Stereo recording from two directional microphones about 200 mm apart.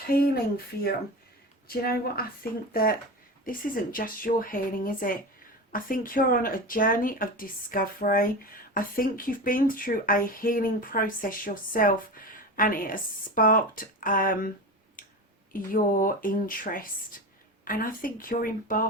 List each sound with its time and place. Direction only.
0.1 s speech: 50° left (ahead or behind)
15.0 s clicking: 45° left (ahead or behind)
15.5 s speech: 45° left (ahead or behind)